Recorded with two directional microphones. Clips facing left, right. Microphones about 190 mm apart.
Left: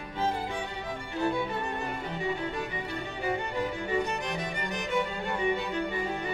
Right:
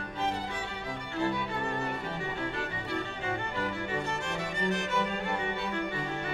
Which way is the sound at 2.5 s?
15° left (ahead or behind).